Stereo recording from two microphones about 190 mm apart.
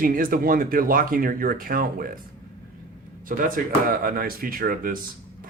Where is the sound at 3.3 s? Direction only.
45° right (ahead or behind).